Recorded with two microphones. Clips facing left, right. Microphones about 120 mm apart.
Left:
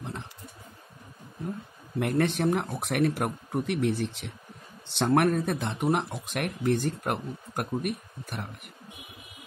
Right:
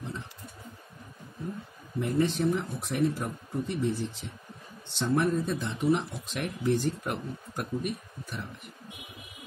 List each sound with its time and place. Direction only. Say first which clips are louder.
2.0 s speech: left 1 dB; 65° left (ahead or behind)